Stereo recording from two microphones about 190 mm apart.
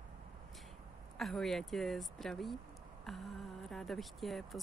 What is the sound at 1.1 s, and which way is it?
Speech, centre (ahead or behind).